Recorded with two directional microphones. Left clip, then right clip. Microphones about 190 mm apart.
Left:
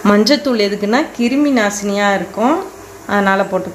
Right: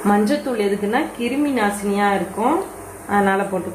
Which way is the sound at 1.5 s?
50° left (ahead or behind).